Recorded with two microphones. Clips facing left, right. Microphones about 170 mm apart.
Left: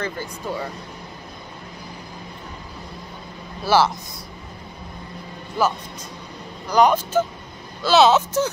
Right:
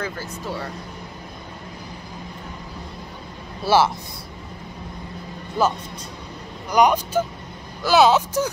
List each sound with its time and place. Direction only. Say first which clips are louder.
0.0 s speech: left 1 dB; 5° right (ahead or behind)
3.6 s speech: even; 25° right (ahead or behind)
6.7 s speech: left 1 dB; 15° right (ahead or behind)